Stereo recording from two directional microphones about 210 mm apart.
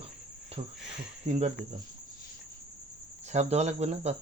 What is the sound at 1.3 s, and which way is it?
Speech, 30° right (ahead or behind).